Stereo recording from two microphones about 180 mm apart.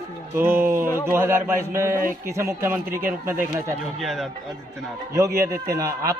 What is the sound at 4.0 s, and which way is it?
Speech, centre (ahead or behind).